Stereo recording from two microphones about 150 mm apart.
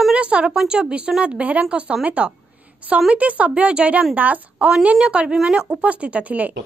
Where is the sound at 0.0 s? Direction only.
10° right (ahead or behind).